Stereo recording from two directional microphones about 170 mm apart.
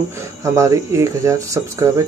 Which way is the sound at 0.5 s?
20° right (ahead or behind).